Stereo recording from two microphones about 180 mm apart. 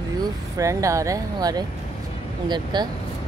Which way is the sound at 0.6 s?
20° right (ahead or behind).